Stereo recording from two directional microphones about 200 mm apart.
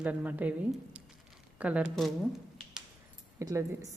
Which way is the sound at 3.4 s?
15° right (ahead or behind).